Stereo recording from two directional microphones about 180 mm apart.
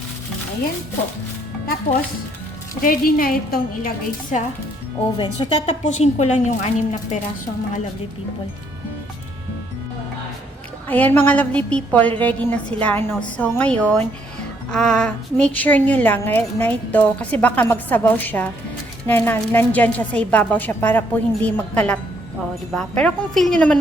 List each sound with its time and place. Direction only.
2.8 s a woman's voice: 50° left (ahead or behind)
5.1 s speech: 25° left (ahead or behind)
5.9 s a woman's voice: 40° left (ahead or behind)
10.8 s a woman's voice: 10° left (ahead or behind)